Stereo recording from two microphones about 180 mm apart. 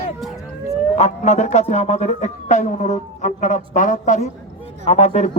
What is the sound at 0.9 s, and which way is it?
Speech, 40° left (ahead or behind).